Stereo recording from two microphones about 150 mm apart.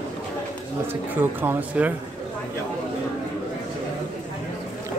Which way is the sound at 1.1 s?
15° right (ahead or behind).